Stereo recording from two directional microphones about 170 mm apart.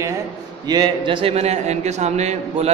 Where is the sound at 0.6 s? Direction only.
25° right (ahead or behind); by 2.7 s 40° right (ahead or behind).